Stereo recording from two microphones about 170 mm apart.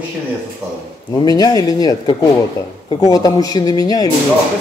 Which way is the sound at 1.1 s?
20° left (ahead or behind).